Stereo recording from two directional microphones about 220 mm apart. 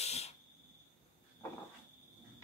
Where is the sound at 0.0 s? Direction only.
30° left (ahead or behind).